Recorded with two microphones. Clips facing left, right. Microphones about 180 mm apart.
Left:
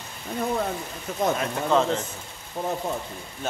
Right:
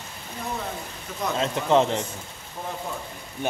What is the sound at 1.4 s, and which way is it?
Speech, 20° right (ahead or behind).